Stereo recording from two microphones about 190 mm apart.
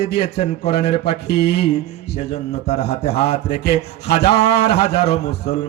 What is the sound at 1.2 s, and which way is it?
Speech, 60° left (ahead or behind).